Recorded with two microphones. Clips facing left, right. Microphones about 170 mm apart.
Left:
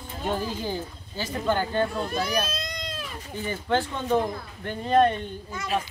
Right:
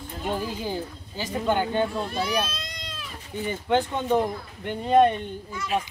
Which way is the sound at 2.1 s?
45° left (ahead or behind).